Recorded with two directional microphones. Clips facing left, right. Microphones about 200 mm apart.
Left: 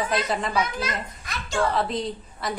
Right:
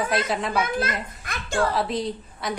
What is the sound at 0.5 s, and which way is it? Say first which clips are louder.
A child's voice: right 2 dB; 55° right (ahead or behind).